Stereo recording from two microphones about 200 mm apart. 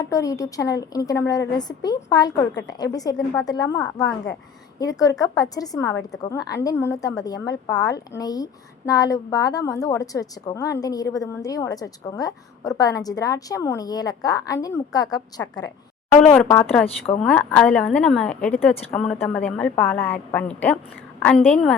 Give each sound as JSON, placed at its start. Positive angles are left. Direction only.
{"t": 0.0, "sound": "a woman's voice", "side_deg": 15}
{"t": 16.3, "sound": "a woman's voice", "side_deg": 10}